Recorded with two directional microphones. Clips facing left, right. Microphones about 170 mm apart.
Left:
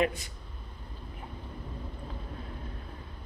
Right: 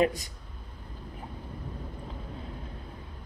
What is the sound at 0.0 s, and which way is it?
Speech, 40° right (ahead or behind).